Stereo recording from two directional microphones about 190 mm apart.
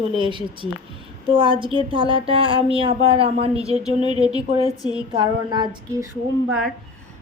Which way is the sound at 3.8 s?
25° left (ahead or behind).